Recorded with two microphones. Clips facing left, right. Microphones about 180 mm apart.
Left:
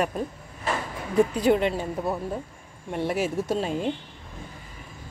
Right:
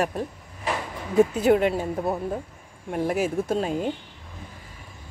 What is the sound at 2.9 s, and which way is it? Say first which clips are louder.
Speech: right 2 dB; 45° right (ahead or behind).